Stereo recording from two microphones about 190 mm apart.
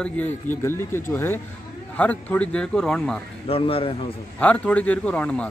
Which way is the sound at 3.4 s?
30° left (ahead or behind).